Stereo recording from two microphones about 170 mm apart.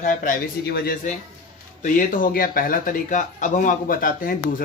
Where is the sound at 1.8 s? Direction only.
50° left (ahead or behind).